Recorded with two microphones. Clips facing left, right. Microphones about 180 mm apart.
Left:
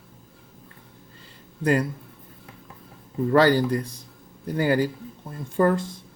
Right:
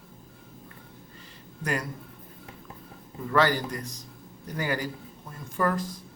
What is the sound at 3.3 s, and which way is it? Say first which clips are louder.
A man's voice: left 6 dB; 35° left (ahead or behind).